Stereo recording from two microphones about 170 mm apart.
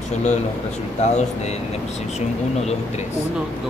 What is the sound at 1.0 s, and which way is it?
Speech, 40° left (ahead or behind).